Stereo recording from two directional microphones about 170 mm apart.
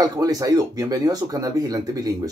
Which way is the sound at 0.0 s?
20° right (ahead or behind).